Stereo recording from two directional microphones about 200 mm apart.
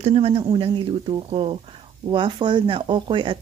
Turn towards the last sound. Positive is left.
turn(degrees=-25)  # may be behind; listen again after turning